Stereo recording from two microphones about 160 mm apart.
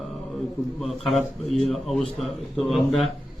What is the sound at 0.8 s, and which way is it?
A man's voice, centre (ahead or behind).